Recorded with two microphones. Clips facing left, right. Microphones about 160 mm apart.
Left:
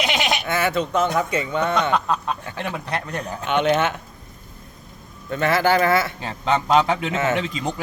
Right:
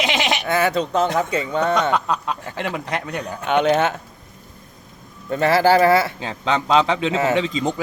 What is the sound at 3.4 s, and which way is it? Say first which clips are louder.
Speech: right 2 dB; 40° right (ahead or behind).